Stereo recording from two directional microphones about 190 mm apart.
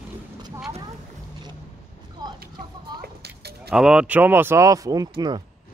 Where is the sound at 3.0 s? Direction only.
55° right (ahead or behind).